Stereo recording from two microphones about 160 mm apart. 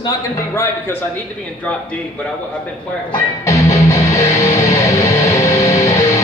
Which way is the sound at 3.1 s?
20° left (ahead or behind).